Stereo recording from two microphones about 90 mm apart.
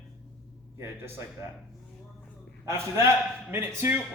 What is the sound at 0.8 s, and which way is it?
Speech, 30° right (ahead or behind).